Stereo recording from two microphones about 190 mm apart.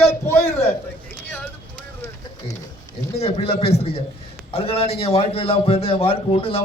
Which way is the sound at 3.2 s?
30° left (ahead or behind).